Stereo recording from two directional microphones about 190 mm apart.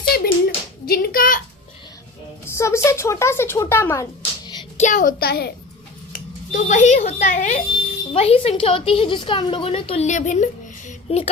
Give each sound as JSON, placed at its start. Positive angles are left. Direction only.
{"t": 0.1, "sound": "hands", "side_deg": 55}
{"t": 2.5, "sound": "speech", "side_deg": 15}
{"t": 4.8, "sound": "a child's voice", "side_deg": 40}
{"t": 6.1, "sound": "a woman's voice", "side_deg": 40}